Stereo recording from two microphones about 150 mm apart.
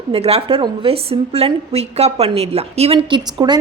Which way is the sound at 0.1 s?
40° right (ahead or behind).